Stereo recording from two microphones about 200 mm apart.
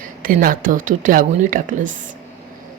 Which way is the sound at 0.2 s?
45° right (ahead or behind).